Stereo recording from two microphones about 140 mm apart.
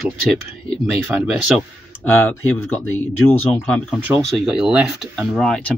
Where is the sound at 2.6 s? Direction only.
15° left (ahead or behind).